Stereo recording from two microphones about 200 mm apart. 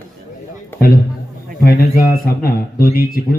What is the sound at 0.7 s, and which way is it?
A man's voice, 45° left (ahead or behind).